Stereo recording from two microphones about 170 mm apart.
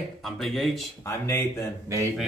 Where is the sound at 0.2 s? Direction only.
Centre (ahead or behind).